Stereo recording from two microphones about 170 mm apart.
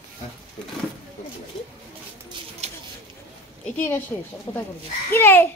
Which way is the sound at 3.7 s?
10° left (ahead or behind).